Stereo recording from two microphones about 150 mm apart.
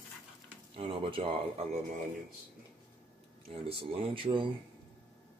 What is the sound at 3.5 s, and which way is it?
Speech, 40° right (ahead or behind).